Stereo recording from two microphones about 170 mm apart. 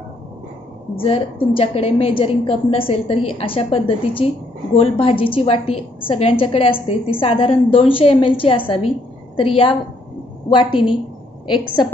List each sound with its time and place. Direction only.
0.9 s a woman's voice: 35° left (ahead or behind)
10.5 s a woman's voice: 30° left (ahead or behind)